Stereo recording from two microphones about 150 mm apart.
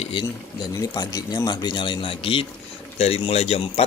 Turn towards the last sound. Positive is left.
turn(degrees=40)  # may be behind; listen again after turning